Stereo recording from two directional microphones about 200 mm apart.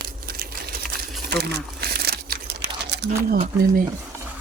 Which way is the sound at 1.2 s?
55° right (ahead or behind).